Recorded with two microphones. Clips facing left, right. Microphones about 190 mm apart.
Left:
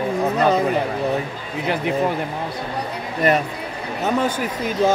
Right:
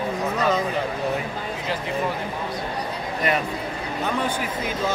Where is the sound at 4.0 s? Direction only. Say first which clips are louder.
Left 5 dB; 45° left (ahead or behind).